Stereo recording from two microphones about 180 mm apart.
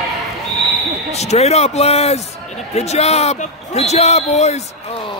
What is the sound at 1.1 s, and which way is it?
Speech, 35° left (ahead or behind).